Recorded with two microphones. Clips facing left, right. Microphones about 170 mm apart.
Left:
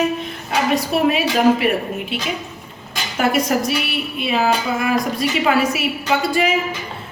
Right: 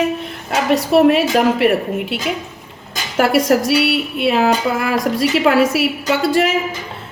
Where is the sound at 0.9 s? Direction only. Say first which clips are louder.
Right 7 dB; 65° right (ahead or behind).